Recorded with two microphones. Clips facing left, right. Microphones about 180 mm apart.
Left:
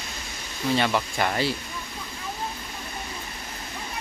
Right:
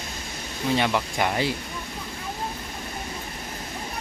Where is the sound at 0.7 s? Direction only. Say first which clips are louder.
Even; 15° right (ahead or behind).